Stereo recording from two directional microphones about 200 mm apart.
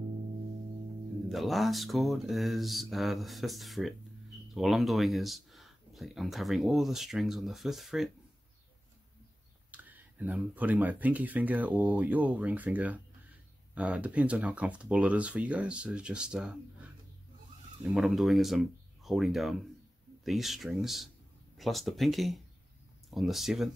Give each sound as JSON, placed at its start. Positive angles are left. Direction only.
{"t": 1.3, "sound": "speech", "side_deg": 0}
{"t": 9.7, "sound": "speech", "side_deg": -10}
{"t": 17.9, "sound": "speech", "side_deg": 0}